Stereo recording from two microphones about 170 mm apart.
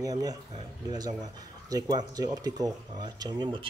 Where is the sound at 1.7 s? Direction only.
20° right (ahead or behind).